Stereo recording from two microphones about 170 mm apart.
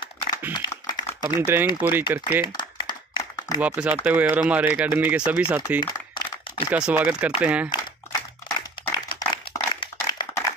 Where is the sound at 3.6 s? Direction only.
5° right (ahead or behind).